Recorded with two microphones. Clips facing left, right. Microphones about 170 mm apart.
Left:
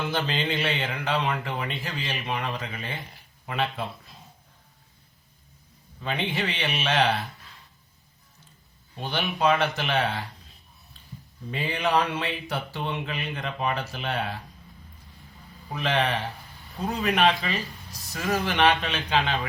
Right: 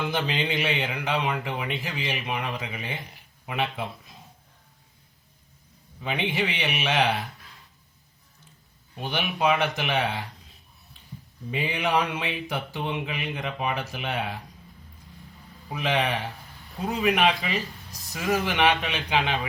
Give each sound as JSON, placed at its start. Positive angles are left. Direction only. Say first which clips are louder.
{"t": 0.1, "sound": "speech", "louder": "even", "side_deg": -15}
{"t": 6.0, "sound": "speech", "louder": "right 1 dB", "side_deg": -15}
{"t": 9.0, "sound": "speech", "louder": "even", "side_deg": -15}
{"t": 11.5, "sound": "speech", "louder": "even", "side_deg": -15}
{"t": 15.7, "sound": "speech", "louder": "even", "side_deg": -15}